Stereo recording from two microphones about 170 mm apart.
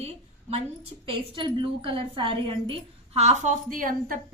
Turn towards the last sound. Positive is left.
turn(degrees=-55)  # may be behind; listen again after turning